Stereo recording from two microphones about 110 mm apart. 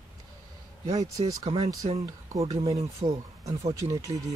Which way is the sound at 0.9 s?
30° right (ahead or behind).